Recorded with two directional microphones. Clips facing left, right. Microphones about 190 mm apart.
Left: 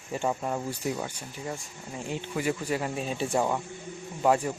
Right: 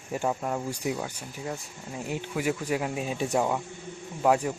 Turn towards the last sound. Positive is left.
turn(degrees=-5)  # may be behind; listen again after turning